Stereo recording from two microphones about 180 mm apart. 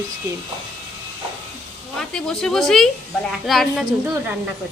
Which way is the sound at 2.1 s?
5° left (ahead or behind).